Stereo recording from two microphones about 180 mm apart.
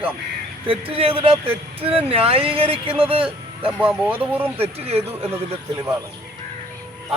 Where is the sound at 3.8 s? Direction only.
10° right (ahead or behind).